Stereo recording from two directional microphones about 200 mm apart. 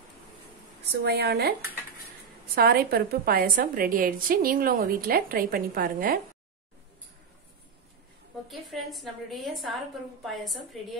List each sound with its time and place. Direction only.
0.9 s a woman's voice: 55° right (ahead or behind)
2.5 s a woman's voice: 50° right (ahead or behind)
8.5 s a woman's voice: centre (ahead or behind)